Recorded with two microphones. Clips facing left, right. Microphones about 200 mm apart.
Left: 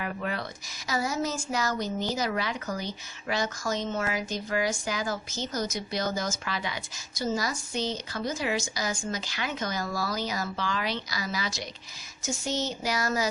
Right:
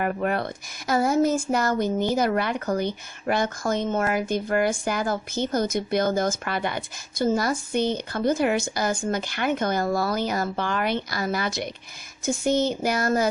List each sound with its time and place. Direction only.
0.0 s a woman's voice: 55° right (ahead or behind)